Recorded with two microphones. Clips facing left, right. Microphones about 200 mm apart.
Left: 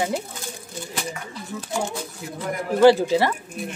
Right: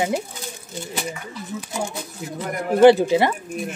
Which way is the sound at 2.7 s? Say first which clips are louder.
Right 2 dB; 20° right (ahead or behind).